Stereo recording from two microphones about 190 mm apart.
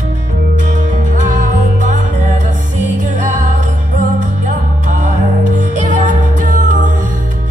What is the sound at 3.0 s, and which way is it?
Music, 40° right (ahead or behind).